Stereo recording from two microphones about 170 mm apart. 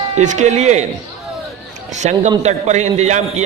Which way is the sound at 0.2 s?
45° right (ahead or behind).